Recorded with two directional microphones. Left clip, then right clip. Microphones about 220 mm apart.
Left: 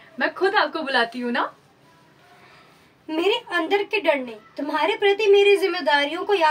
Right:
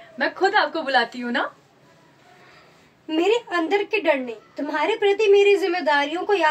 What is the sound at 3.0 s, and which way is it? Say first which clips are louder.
A woman's voice: right 2 dB; 20° left (ahead or behind).